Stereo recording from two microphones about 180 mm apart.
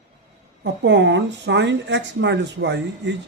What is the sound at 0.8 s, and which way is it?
Speech, 85° right.